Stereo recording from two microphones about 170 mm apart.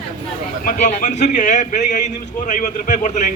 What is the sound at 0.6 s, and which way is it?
A man's voice, 50° left (ahead or behind).